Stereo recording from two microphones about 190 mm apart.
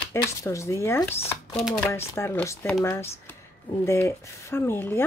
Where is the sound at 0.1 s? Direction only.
15° left (ahead or behind).